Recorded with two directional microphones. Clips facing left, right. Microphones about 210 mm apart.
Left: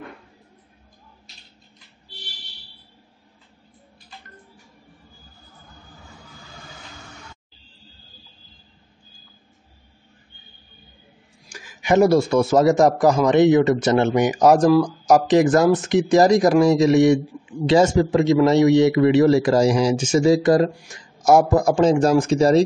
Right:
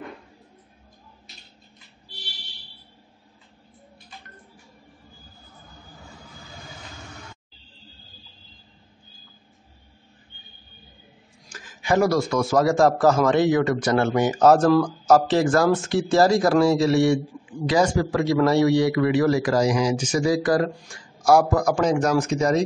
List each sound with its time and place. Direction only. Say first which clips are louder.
11.4 s a man's voice: left 3 dB; 10° left (ahead or behind); by 22.6 s 30° left (ahead or behind)